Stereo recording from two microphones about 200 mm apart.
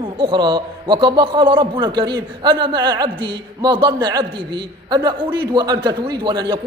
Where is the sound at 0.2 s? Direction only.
25° right (ahead or behind).